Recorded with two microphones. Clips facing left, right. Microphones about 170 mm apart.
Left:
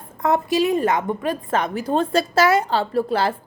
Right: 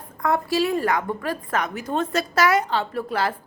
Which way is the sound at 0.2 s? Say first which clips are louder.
Left 3 dB; 20° left (ahead or behind).